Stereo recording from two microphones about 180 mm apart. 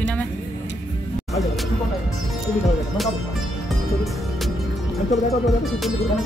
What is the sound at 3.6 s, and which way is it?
Music, centre (ahead or behind).